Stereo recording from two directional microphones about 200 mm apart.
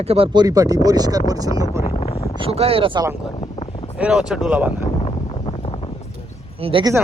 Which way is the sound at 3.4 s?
25° left (ahead or behind).